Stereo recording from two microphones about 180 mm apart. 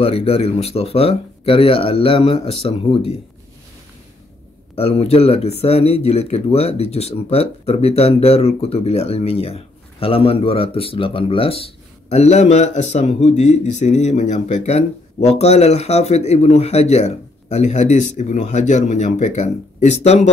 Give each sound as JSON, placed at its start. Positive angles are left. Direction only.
{"t": 0.0, "sound": "a man's voice", "side_deg": 35}
{"t": 4.7, "sound": "a man's voice", "side_deg": 35}